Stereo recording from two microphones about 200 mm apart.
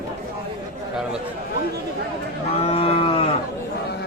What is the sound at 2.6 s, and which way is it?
Cattle, 30° left (ahead or behind).